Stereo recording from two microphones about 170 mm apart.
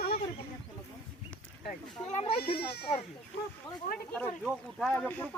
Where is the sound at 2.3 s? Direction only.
65° left (ahead or behind).